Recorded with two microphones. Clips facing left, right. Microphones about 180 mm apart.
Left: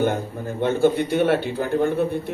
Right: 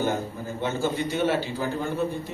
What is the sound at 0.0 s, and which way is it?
A man's voice, 55° left (ahead or behind).